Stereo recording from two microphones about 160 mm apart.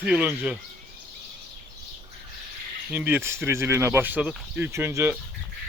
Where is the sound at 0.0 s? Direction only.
10° right (ahead or behind).